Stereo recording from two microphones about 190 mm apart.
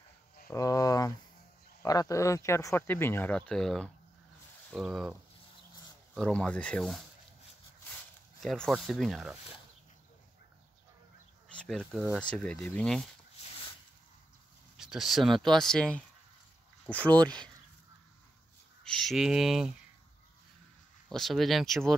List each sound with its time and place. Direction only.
0.5 s a sound: 20° left (ahead or behind)
1.8 s speech: 20° left (ahead or behind); by 5.1 s centre (ahead or behind)
6.1 s speech: 5° left (ahead or behind)
8.4 s speech: 5° left (ahead or behind)
11.5 s speech: 5° left (ahead or behind)
14.8 s speech: centre (ahead or behind)
18.9 s speech: centre (ahead or behind)
21.1 s speech: centre (ahead or behind)